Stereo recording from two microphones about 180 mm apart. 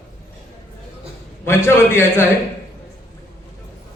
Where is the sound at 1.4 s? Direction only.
15° left (ahead or behind).